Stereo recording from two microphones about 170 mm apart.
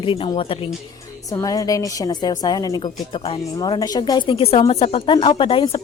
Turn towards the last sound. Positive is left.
turn(degrees=30)  # may be behind; listen again after turning